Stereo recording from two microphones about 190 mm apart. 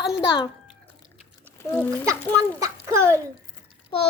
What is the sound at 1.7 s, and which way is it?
Speech, 5° left (ahead or behind).